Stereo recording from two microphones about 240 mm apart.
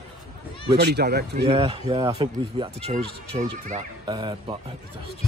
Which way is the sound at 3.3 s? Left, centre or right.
Right.